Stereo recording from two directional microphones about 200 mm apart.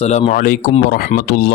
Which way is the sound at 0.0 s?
35° left (ahead or behind).